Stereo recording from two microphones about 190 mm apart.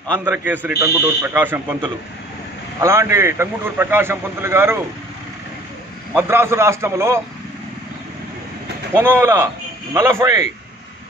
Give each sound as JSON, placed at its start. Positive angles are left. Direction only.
{"t": 0.2, "sound": "a man's voice", "side_deg": -10}
{"t": 2.8, "sound": "a man's voice", "side_deg": -15}
{"t": 6.1, "sound": "a man's voice", "side_deg": -10}
{"t": 8.9, "sound": "a man's voice", "side_deg": -10}